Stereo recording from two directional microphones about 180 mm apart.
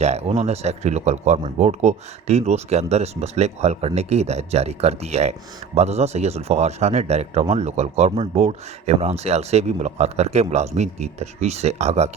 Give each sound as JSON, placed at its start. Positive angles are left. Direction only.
{"t": 0.0, "sound": "speech", "side_deg": -35}